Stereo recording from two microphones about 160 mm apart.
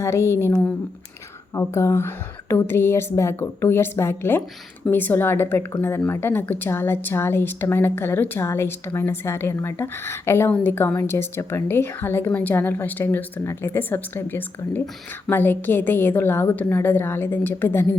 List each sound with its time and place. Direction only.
0.0 s a woman's voice: 15° left (ahead or behind)
1.5 s a woman's voice: 20° left (ahead or behind)